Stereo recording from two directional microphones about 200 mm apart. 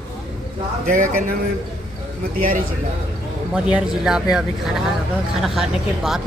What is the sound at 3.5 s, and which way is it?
Speech, 5° right (ahead or behind).